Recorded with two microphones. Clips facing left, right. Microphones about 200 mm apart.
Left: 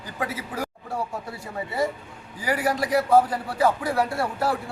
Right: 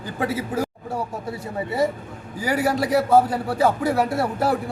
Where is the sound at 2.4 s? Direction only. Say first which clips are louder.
Right 3 dB; 25° right (ahead or behind).